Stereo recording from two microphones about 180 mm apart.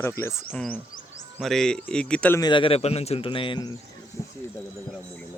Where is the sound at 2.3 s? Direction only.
25° left (ahead or behind).